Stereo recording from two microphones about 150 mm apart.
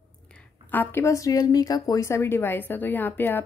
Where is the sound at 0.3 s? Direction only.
10° left (ahead or behind).